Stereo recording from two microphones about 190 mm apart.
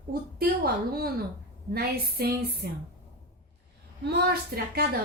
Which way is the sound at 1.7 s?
55° right (ahead or behind).